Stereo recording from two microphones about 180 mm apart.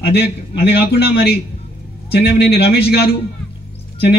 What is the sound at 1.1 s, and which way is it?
A man's voice, 60° left (ahead or behind).